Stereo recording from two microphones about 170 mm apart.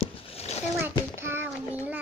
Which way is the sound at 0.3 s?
35° left (ahead or behind).